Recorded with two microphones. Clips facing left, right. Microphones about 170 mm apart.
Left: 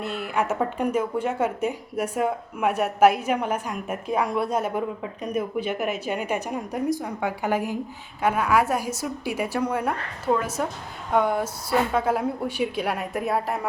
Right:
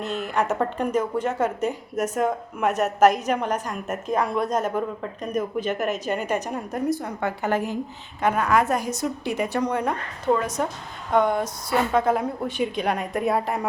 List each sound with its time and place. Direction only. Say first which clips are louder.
0.0 s a woman's voice: right 1 dB; 10° left (ahead or behind)